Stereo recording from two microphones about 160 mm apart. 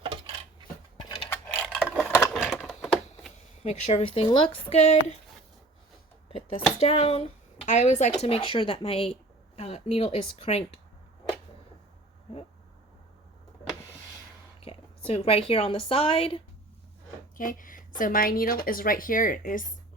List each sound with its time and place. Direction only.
0.0 s cutlery: 35° right (ahead or behind)
1.0 s a sound: 20° left (ahead or behind)
1.5 s a sound: 5° left (ahead or behind)
3.6 s a woman's voice: 45° left (ahead or behind)
6.2 s speech: 35° left (ahead or behind)
8.2 s a woman's voice: 35° left (ahead or behind)
14.6 s a woman's voice: 35° left (ahead or behind)
17.3 s speech: 60° left (ahead or behind)